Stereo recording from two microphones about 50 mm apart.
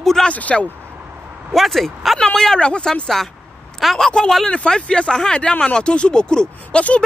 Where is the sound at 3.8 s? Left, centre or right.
Centre.